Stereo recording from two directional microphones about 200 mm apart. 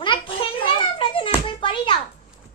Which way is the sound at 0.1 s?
25° left (ahead or behind).